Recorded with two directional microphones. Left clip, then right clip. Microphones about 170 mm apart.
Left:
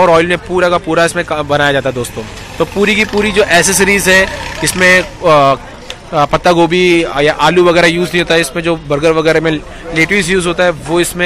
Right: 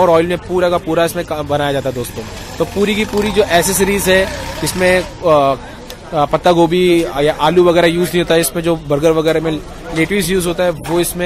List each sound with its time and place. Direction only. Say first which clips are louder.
0.0 s a man's voice: left 3 dB; 10° right (ahead or behind)